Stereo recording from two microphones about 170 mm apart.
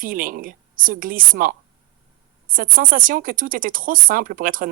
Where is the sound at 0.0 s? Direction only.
55° right (ahead or behind).